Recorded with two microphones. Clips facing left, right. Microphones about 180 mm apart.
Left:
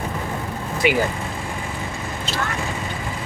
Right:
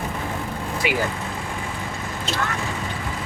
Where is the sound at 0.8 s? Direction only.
20° left (ahead or behind).